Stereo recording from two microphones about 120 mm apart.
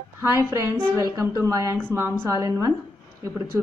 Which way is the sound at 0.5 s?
25° right (ahead or behind).